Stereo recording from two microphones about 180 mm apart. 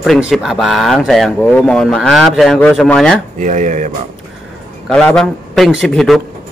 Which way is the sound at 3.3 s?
45° right (ahead or behind).